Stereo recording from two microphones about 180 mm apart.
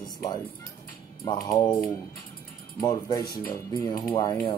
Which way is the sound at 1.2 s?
20° left (ahead or behind).